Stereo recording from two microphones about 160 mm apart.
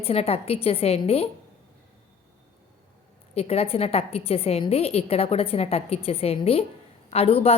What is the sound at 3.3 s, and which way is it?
A woman's voice, 40° left (ahead or behind).